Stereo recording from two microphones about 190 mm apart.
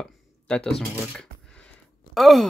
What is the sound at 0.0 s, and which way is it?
Computer keyboard, 5° left (ahead or behind).